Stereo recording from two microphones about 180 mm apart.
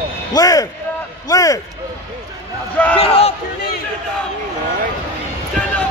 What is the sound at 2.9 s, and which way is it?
Speech, 35° left (ahead or behind).